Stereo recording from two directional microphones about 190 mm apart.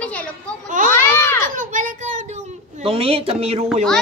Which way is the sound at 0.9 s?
15° left (ahead or behind).